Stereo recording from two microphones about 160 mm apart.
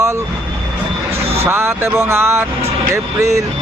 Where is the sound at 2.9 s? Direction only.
20° right (ahead or behind).